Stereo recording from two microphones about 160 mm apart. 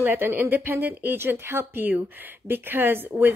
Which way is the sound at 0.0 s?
10° right (ahead or behind).